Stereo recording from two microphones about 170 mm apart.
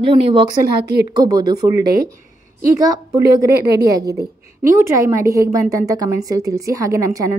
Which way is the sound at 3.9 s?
20° right (ahead or behind).